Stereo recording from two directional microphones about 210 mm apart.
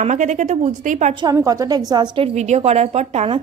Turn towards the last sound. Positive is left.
turn(degrees=-30)  # may be behind; listen again after turning